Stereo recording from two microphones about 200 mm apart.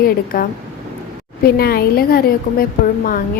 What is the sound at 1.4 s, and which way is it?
A woman's voice, 50° left (ahead or behind).